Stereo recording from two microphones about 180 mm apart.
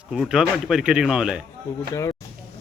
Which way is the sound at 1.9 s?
20° left (ahead or behind).